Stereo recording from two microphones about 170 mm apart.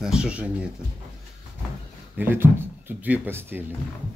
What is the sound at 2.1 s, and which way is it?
Speech, 15° right (ahead or behind).